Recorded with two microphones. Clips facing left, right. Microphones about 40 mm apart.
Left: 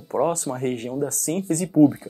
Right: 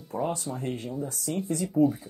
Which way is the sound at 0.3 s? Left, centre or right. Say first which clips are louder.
Left 7 dB; left.